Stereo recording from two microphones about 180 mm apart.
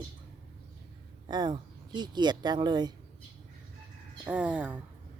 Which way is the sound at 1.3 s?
25° right (ahead or behind).